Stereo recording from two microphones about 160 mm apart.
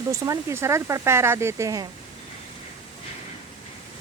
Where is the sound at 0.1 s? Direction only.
20° right (ahead or behind).